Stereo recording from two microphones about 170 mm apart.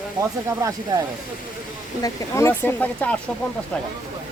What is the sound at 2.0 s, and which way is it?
A woman's voice, 15° left (ahead or behind).